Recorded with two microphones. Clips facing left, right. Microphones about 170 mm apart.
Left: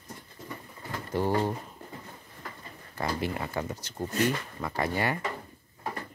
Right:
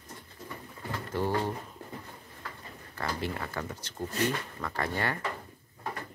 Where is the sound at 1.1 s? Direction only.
15° left (ahead or behind).